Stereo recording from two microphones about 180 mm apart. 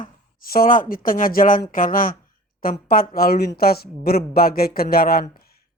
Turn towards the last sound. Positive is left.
turn(degrees=60)  # may be behind; listen again after turning